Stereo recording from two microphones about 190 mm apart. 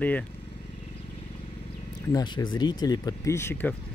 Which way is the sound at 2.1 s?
25° left (ahead or behind).